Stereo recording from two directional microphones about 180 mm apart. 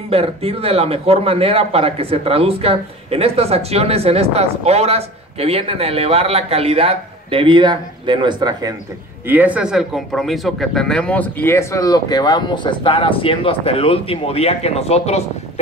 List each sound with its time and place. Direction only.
0.1 s speech: 35° right (ahead or behind)
9.3 s speech: 10° right (ahead or behind); by 15.6 s 35° left (ahead or behind)